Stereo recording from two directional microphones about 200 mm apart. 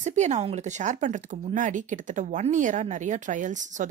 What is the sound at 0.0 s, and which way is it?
Speech, 35° right (ahead or behind).